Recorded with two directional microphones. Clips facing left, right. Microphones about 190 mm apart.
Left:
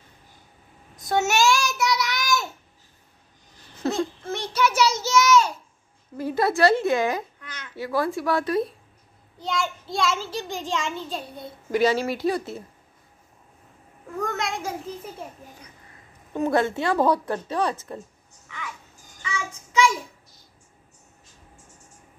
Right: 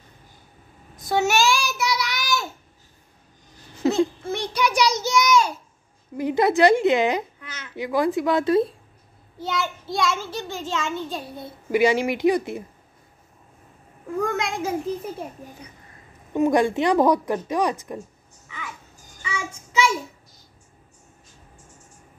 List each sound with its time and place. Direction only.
0.9 s child singing: centre (ahead or behind)
3.8 s a sound: 10° right (ahead or behind)
5.0 s child singing: 15° right (ahead or behind)
6.1 s a woman's voice: 15° right (ahead or behind)
7.4 s babbling: 5° right (ahead or behind)
7.7 s a woman's voice: 15° right (ahead or behind)
9.4 s a child's voice: 5° right (ahead or behind); by 11.0 s 10° left (ahead or behind)
11.7 s a woman's voice: 15° right (ahead or behind)
14.2 s a child's voice: centre (ahead or behind)
16.3 s a woman's voice: 15° right (ahead or behind)
19.5 s child singing: 5° right (ahead or behind)